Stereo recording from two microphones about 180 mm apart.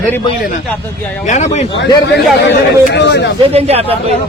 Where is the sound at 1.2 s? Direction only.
40° left (ahead or behind).